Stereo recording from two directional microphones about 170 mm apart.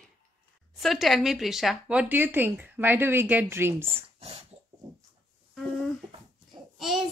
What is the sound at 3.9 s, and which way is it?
Speech, 35° right (ahead or behind).